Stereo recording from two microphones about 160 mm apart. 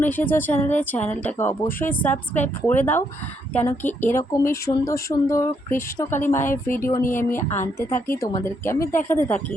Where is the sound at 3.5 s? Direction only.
10° left (ahead or behind).